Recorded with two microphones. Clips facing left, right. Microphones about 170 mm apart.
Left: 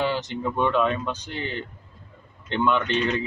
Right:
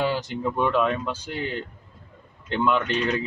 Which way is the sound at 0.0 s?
10° right (ahead or behind).